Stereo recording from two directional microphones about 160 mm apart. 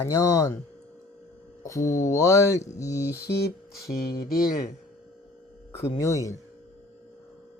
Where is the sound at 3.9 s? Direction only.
70° left (ahead or behind).